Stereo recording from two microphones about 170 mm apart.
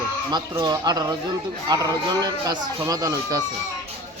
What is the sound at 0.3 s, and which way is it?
Speech, 25° right (ahead or behind).